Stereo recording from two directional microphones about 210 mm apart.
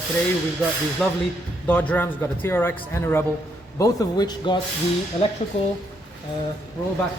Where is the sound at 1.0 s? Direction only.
5° left (ahead or behind); by 4.6 s 20° left (ahead or behind).